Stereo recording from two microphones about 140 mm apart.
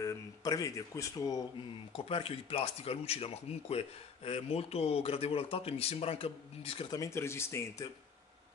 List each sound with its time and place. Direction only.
0.0 s speech: 25° left (ahead or behind)
2.0 s speech: 40° left (ahead or behind)
6.9 s speech: 20° left (ahead or behind)